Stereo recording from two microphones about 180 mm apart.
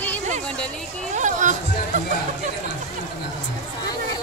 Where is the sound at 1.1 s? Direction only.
45° right (ahead or behind).